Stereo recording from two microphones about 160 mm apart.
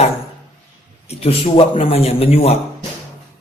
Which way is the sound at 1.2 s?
40° left (ahead or behind).